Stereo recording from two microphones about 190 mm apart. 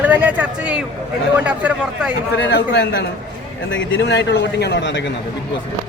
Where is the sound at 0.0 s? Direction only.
10° right (ahead or behind).